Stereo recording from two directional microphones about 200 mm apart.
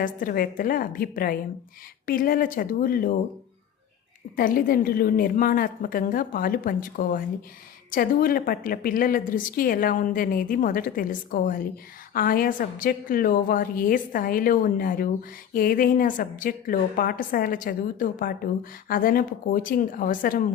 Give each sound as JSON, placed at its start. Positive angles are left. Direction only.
{"t": 0.0, "sound": "a woman's voice", "side_deg": 45}
{"t": 4.4, "sound": "a woman's voice", "side_deg": 45}